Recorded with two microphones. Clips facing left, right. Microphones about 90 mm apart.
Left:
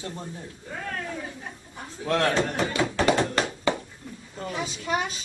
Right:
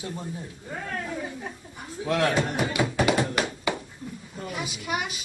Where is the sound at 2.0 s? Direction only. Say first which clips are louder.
Even; 10° right (ahead or behind).